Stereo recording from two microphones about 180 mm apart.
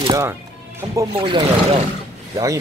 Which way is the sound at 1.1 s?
30° right (ahead or behind).